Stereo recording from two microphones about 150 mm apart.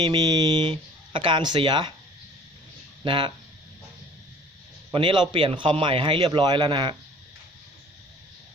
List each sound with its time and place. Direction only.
0.0 s a man's voice: 30° right (ahead or behind)
3.0 s a man's voice: 35° right (ahead or behind)
4.9 s a man's voice: 35° right (ahead or behind)